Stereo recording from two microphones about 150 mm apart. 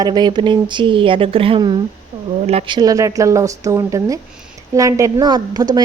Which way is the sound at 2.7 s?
25° right (ahead or behind).